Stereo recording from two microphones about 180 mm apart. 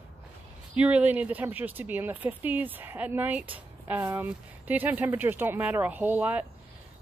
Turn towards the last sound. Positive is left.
turn(degrees=-10)  # may be behind; listen again after turning